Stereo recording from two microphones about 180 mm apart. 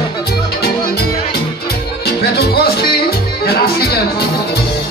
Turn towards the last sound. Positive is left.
turn(degrees=60)  # may be behind; listen again after turning